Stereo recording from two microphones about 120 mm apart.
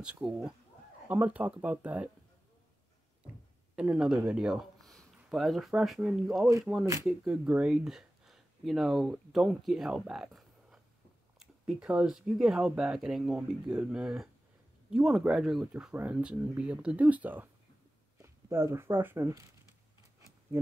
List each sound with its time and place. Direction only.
0.0 s speech: 10° right (ahead or behind)
3.7 s speech: 5° right (ahead or behind); by 19.4 s 25° right (ahead or behind)